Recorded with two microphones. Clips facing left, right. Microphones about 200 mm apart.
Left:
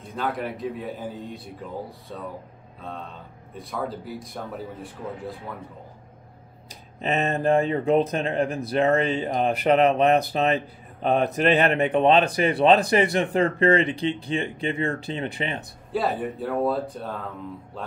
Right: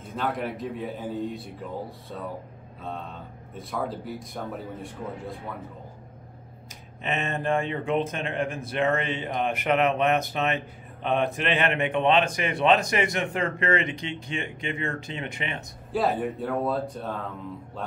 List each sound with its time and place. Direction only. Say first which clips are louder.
0.1 s speech: left 1 dB; centre (ahead or behind)
6.7 s speech: left 5 dB; 35° left (ahead or behind)
15.9 s speech: even; centre (ahead or behind)